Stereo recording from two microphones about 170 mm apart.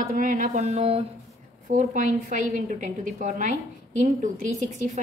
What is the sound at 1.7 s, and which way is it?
A woman's voice, 50° right (ahead or behind).